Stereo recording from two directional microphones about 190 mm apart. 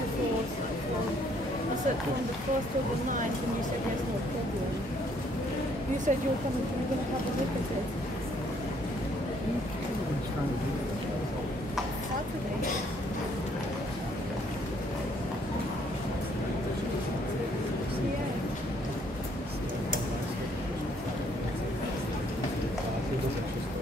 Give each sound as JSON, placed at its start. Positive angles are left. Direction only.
{"t": 6.1, "sound": "speech", "side_deg": -40}